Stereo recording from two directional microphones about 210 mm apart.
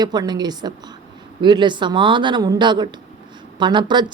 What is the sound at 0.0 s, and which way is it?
Speech, 20° right (ahead or behind).